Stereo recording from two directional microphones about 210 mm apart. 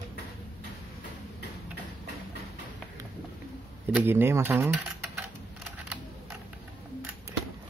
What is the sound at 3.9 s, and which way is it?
Speech, 10° right (ahead or behind).